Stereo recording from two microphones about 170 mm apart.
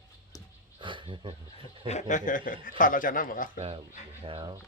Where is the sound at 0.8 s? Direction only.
30° right (ahead or behind).